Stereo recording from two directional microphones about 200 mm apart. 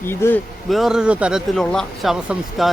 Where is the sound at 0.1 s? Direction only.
10° left (ahead or behind).